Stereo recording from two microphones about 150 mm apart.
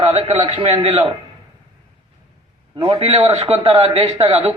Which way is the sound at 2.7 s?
40° right (ahead or behind).